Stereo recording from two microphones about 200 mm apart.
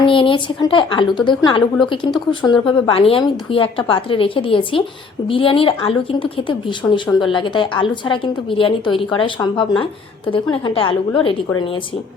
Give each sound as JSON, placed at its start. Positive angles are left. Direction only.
{"t": 0.0, "sound": "a woman's voice", "side_deg": 25}